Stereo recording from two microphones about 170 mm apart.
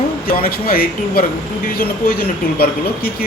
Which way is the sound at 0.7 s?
60° left (ahead or behind).